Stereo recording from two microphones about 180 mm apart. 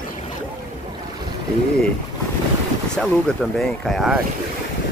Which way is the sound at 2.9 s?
5° left (ahead or behind).